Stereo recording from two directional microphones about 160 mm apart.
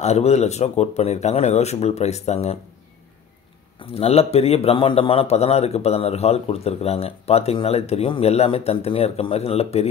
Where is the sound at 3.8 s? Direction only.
40° left (ahead or behind).